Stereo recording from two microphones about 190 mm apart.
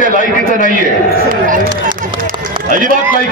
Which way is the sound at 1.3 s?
45° right (ahead or behind).